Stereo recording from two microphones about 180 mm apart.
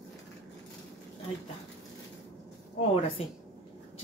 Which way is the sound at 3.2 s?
35° left (ahead or behind).